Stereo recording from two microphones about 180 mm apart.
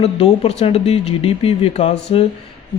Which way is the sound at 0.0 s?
35° left (ahead or behind).